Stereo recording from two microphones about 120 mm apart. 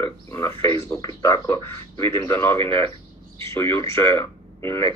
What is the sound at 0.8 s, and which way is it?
A man's voice, 30° left (ahead or behind).